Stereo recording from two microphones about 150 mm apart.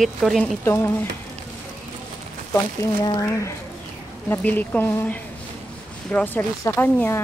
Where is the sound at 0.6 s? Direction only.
20° left (ahead or behind).